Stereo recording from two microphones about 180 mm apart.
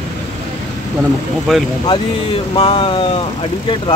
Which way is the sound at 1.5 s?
Centre (ahead or behind).